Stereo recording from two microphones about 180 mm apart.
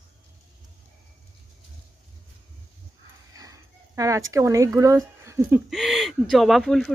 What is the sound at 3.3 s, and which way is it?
Speech, 20° right (ahead or behind).